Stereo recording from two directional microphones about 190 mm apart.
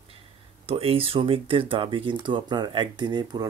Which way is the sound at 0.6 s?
30° right (ahead or behind).